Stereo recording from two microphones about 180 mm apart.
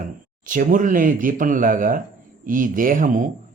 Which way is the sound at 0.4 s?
50° right (ahead or behind).